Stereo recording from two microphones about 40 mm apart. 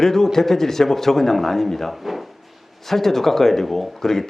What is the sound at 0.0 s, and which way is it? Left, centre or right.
Speech, centre.